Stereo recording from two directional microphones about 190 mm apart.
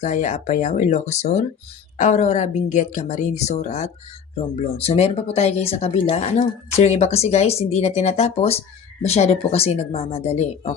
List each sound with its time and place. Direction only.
0.0 s speech: 40° left (ahead or behind)